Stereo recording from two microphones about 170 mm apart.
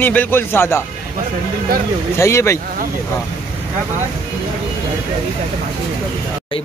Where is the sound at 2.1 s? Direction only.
15° left (ahead or behind).